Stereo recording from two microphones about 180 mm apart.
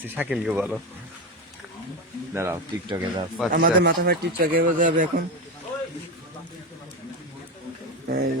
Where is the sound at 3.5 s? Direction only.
55° right (ahead or behind).